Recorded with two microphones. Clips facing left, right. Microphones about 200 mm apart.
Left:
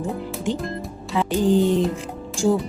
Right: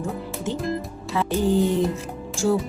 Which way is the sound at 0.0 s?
15° left (ahead or behind).